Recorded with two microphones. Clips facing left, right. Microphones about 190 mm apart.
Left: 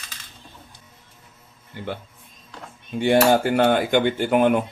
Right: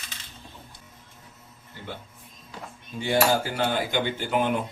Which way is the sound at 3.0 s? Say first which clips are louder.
Left 6 dB; 60° left (ahead or behind).